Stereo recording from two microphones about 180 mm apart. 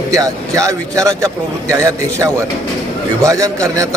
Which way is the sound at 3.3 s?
20° right (ahead or behind).